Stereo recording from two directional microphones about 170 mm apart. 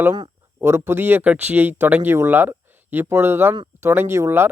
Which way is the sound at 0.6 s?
15° right (ahead or behind).